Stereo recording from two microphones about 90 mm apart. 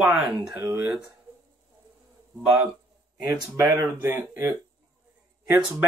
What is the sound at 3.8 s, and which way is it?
Speech, 25° right (ahead or behind).